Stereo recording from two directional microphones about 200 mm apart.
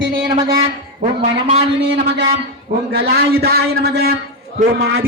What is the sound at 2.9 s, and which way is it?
A man's voice, 50° right (ahead or behind).